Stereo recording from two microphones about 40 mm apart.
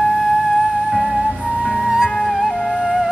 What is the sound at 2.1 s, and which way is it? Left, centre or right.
Music, centre.